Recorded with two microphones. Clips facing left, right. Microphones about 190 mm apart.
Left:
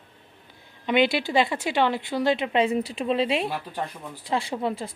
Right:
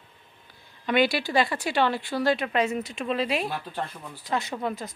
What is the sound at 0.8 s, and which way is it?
A woman's voice, 20° left (ahead or behind).